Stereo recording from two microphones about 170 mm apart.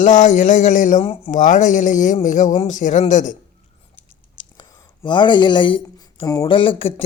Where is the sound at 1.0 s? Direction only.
30° left (ahead or behind).